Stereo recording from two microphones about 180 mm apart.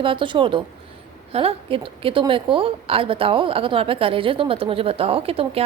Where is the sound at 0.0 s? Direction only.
30° right (ahead or behind).